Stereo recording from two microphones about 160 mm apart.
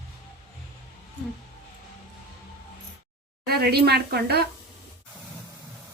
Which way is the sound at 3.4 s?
75° right (ahead or behind).